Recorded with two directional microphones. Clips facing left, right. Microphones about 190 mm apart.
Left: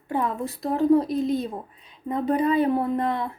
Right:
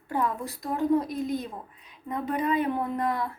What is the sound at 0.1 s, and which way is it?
A woman's voice, 20° left (ahead or behind).